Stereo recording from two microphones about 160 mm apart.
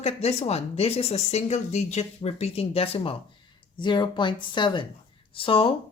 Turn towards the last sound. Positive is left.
turn(degrees=35)  # may be behind; listen again after turning